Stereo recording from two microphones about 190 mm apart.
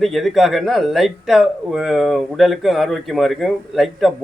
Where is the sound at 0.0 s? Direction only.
Centre (ahead or behind).